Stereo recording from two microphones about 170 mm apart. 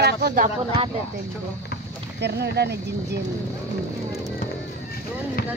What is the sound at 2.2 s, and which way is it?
Speech, 75° right (ahead or behind).